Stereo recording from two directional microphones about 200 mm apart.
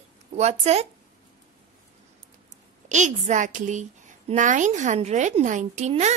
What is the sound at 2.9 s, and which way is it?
A woman's voice, 35° right (ahead or behind).